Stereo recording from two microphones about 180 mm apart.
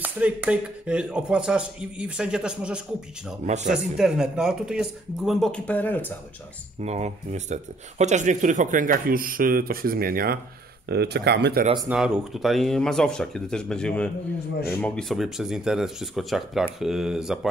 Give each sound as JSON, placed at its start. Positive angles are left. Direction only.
{"t": 0.0, "sound": "speech", "side_deg": -10}
{"t": 3.4, "sound": "a man's voice", "side_deg": -40}
{"t": 3.7, "sound": "speech", "side_deg": -5}
{"t": 6.8, "sound": "speech", "side_deg": -40}
{"t": 11.9, "sound": "speech", "side_deg": -5}